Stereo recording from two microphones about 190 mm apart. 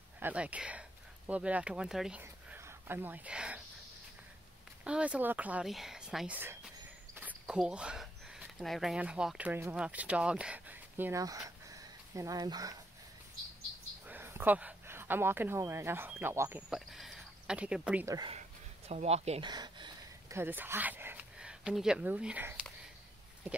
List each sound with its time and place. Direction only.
0.2 s speech: 5° right (ahead or behind)
4.8 s speech: 5° right (ahead or behind)
14.0 s speech: 10° right (ahead or behind)
16.7 s speech: centre (ahead or behind)
18.0 s speech: 20° right (ahead or behind)
18.9 s speech: 35° right (ahead or behind)
19.5 s a sound: 20° right (ahead or behind)